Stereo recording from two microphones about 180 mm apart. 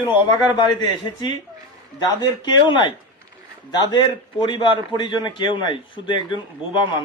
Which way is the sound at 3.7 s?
25° left (ahead or behind).